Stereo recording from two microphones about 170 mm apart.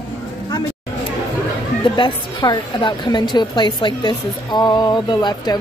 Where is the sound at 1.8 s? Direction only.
30° left (ahead or behind).